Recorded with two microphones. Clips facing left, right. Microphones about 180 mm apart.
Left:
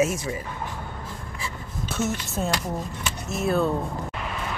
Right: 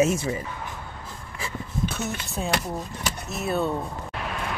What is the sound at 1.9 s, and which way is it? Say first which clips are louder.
Speech: left 4 dB; centre (ahead or behind).